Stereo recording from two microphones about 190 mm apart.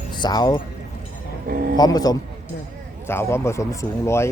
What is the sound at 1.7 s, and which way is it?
A man's voice, 20° left (ahead or behind).